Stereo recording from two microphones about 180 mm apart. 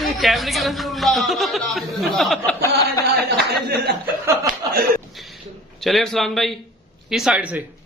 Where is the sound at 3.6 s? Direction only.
65° right (ahead or behind).